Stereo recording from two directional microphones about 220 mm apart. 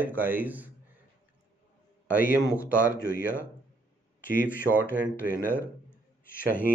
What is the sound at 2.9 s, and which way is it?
Speech, 40° left (ahead or behind).